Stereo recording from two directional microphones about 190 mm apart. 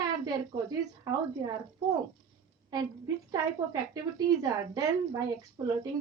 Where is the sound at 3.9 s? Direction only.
20° right (ahead or behind).